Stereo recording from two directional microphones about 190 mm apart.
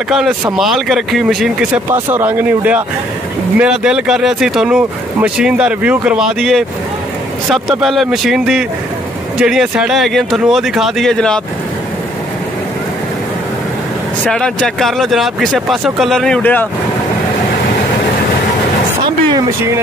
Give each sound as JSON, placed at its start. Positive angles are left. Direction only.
{"t": 0.1, "sound": "speech", "side_deg": 0}
{"t": 7.8, "sound": "speech", "side_deg": 0}
{"t": 14.2, "sound": "speech", "side_deg": 5}
{"t": 19.0, "sound": "a sound", "side_deg": -25}